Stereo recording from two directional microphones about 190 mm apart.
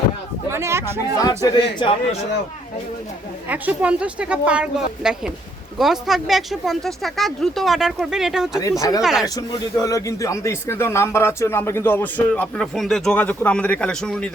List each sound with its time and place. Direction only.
0.5 s a sound: 15° right (ahead or behind)
1.2 s speech: 20° left (ahead or behind)
3.5 s a woman's voice: 5° right (ahead or behind)
9.2 s speech: 20° left (ahead or behind); by 14.3 s 5° left (ahead or behind)